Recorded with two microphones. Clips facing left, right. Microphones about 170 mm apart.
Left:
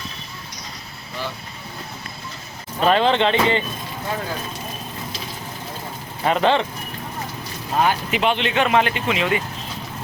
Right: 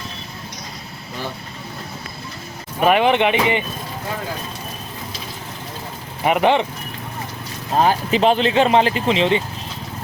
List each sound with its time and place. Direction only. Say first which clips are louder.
2.8 s speech: right 2 dB; 15° right (ahead or behind)
6.2 s speech: right 2 dB; 15° right (ahead or behind)
7.8 s speech: right 4 dB; 35° right (ahead or behind)